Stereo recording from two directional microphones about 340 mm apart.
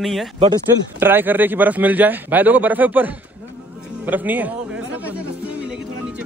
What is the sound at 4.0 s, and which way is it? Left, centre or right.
Music, centre.